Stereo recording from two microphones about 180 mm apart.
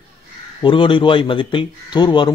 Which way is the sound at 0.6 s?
25° left (ahead or behind).